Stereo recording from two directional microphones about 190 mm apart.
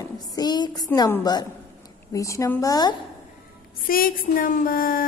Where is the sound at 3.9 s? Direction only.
50° left (ahead or behind).